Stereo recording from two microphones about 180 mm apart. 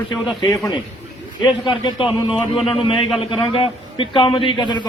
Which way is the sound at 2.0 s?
Centre (ahead or behind).